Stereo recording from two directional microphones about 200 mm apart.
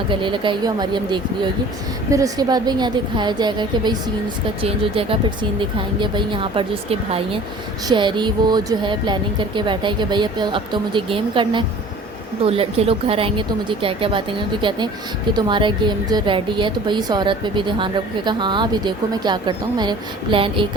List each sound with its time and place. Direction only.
0.1 s a woman's voice: 25° right (ahead or behind)